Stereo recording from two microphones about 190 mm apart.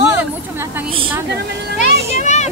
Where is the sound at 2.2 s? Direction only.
40° left (ahead or behind).